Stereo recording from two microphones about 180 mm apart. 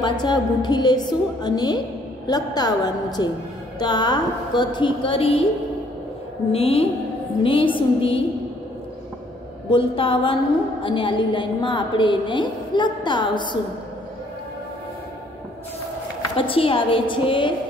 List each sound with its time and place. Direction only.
0.0 s a woman's voice: 25° left (ahead or behind)
6.5 s a woman's voice: 30° left (ahead or behind)
9.7 s a woman's voice: 30° left (ahead or behind)
16.3 s a woman's voice: 30° left (ahead or behind)